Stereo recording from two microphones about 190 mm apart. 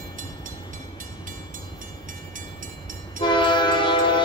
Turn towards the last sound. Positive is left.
turn(degrees=25)  # may be behind; listen again after turning